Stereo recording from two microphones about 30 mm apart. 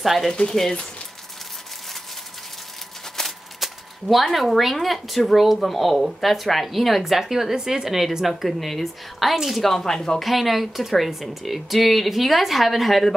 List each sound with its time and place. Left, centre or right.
0.0 s speech: centre
0.3 s speech: left
3.2 s a sound: centre
3.5 s a sound: centre
4.7 s speech: centre
8.5 s speech: centre
9.3 s speech: centre
9.6 s speech: centre
9.8 s speech: centre
10.2 s speech: centre